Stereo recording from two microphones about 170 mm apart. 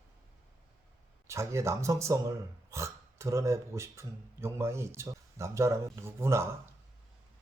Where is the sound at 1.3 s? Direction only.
15° right (ahead or behind).